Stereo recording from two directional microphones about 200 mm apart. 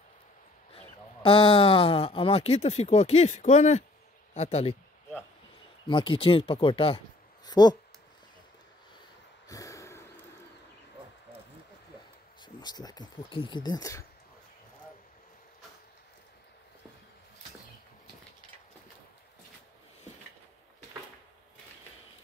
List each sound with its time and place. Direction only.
0.7 s speech: 25° left (ahead or behind)
5.9 s speech: 25° left (ahead or behind)
9.5 s snort: 15° left (ahead or behind)
12.4 s speech: 20° left (ahead or behind)